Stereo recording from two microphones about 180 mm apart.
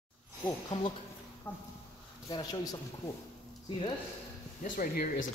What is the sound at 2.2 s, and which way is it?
Speech, 20° left (ahead or behind).